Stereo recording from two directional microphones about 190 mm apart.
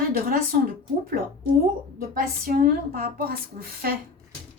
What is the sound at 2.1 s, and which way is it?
A woman's voice, 50° right (ahead or behind).